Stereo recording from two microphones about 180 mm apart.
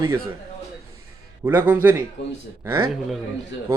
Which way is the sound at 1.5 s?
10° right (ahead or behind).